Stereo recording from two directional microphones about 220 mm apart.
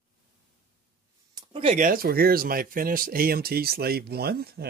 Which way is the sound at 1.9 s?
40° right (ahead or behind).